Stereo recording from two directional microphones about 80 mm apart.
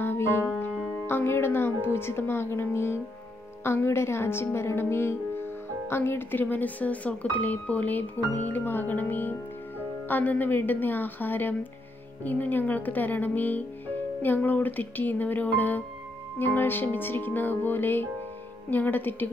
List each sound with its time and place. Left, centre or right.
0.0 s music: left
1.0 s speech: left